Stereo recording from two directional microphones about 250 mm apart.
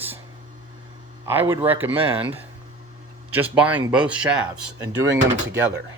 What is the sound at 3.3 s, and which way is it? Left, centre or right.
Speech, centre.